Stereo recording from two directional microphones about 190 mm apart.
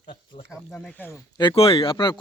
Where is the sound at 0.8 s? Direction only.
5° left (ahead or behind).